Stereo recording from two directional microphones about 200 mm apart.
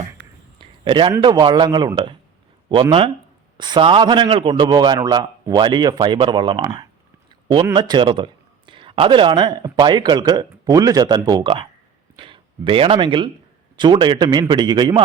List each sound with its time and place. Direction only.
0.6 s a sound: 25° right (ahead or behind)
1.2 s a man's voice: 20° right (ahead or behind)
3.6 s a man's voice: 25° right (ahead or behind)